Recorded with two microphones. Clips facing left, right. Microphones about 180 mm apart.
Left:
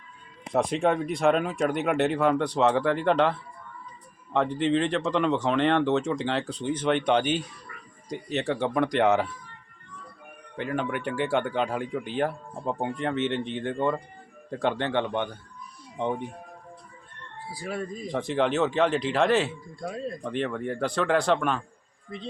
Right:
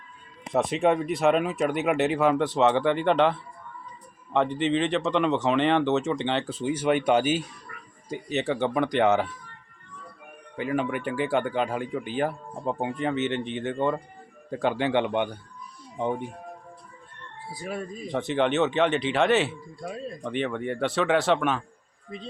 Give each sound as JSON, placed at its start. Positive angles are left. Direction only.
{"t": 0.5, "sound": "speech", "side_deg": 0}
{"t": 10.6, "sound": "speech", "side_deg": -5}
{"t": 16.0, "sound": "speech", "side_deg": -5}
{"t": 17.5, "sound": "speech", "side_deg": -20}
{"t": 18.1, "sound": "speech", "side_deg": 0}